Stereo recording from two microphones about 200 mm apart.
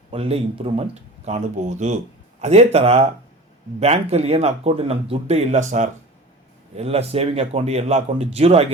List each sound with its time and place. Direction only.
0.1 s speech: 30° right (ahead or behind)